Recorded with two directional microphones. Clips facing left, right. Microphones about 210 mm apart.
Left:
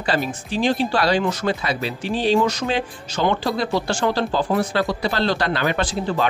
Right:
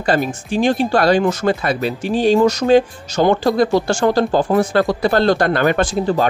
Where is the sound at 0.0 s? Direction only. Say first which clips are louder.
Right 5 dB; 45° right (ahead or behind).